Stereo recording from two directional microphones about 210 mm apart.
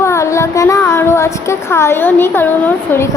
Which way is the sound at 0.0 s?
15° left (ahead or behind).